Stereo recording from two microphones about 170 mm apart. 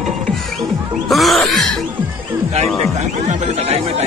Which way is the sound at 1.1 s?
Centre (ahead or behind).